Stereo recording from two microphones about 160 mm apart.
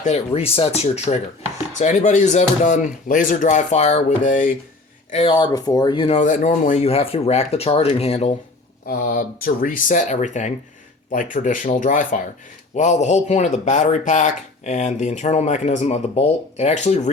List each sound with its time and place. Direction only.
0.0 s speech: 40° left (ahead or behind)
5.1 s speech: 35° left (ahead or behind)
6.2 s speech: 55° left (ahead or behind)
8.9 s speech: 65° left (ahead or behind); by 17.1 s 45° left (ahead or behind)